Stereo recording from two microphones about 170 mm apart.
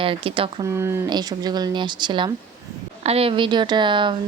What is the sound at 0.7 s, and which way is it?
Speech, 20° right (ahead or behind).